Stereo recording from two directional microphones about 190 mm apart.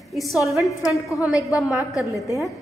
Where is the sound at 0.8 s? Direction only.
15° left (ahead or behind).